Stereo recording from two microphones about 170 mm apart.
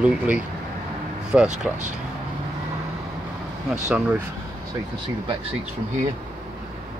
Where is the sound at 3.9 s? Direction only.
5° right (ahead or behind).